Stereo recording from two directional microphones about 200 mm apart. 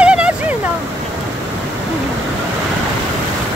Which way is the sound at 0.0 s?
5° right (ahead or behind).